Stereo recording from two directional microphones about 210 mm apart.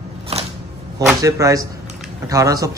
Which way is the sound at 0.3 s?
30° right (ahead or behind).